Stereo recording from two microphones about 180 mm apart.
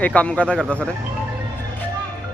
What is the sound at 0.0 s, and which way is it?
Speech, 5° left (ahead or behind).